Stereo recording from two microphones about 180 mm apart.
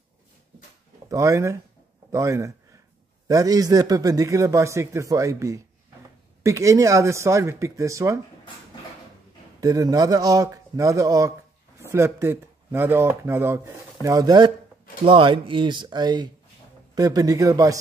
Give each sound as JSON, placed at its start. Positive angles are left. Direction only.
{"t": 1.0, "sound": "a man's voice", "side_deg": -15}
{"t": 9.6, "sound": "a man's voice", "side_deg": -20}